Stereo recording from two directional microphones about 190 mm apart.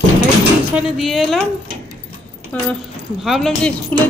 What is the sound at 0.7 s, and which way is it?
Speech, 5° right (ahead or behind).